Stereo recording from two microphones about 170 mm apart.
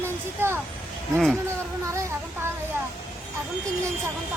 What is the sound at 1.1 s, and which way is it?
Speech, centre (ahead or behind).